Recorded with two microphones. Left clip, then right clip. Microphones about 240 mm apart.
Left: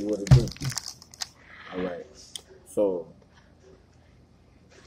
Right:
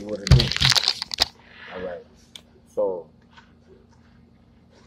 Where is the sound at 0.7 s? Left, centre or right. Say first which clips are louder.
Right 17 dB; right.